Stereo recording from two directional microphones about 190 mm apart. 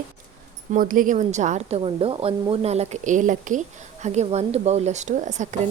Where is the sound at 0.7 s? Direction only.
45° right (ahead or behind).